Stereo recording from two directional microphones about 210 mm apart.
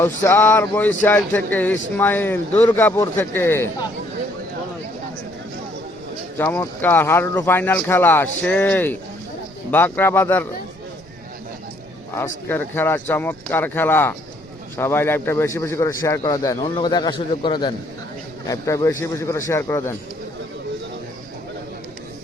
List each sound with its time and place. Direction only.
0.0 s a man's voice: 10° left (ahead or behind)
6.3 s a man's voice: 10° left (ahead or behind)
12.1 s a man's voice: 10° left (ahead or behind)